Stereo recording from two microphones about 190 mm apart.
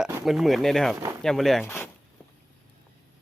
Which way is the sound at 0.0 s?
5° right (ahead or behind).